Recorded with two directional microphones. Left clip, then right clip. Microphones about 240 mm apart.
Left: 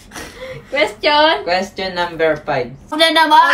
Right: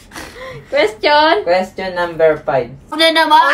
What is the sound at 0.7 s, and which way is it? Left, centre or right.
Speech, right.